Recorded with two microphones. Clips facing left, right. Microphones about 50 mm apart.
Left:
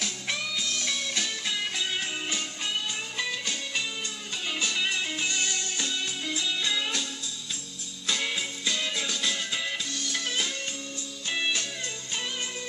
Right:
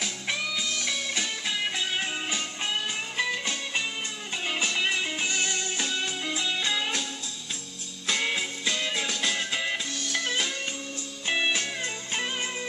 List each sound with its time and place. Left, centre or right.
0.0 s music: centre
8.1 s music: centre